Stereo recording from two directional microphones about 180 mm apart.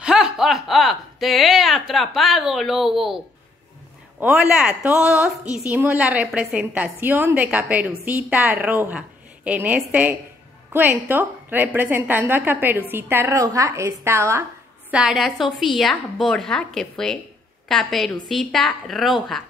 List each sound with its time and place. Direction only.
0.0 s a sound: 5° right (ahead or behind)
4.2 s a woman's voice: 5° right (ahead or behind)
14.9 s a woman's voice: 5° right (ahead or behind)